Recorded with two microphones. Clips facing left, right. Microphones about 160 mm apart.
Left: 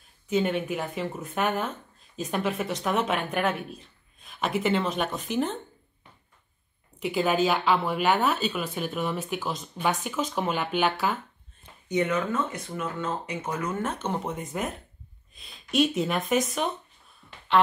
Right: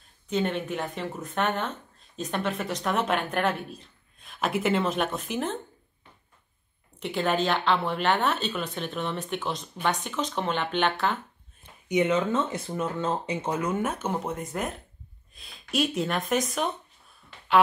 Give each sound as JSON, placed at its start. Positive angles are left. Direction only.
{"t": 0.3, "sound": "speech", "side_deg": 5}
{"t": 7.0, "sound": "speech", "side_deg": 5}
{"t": 11.9, "sound": "speech", "side_deg": -25}